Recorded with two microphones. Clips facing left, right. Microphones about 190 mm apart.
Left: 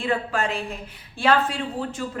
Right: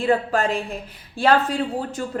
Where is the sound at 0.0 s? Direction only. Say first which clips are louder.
Right 5 dB; 40° right (ahead or behind).